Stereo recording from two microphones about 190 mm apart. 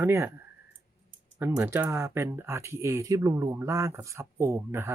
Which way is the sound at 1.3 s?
10° right (ahead or behind).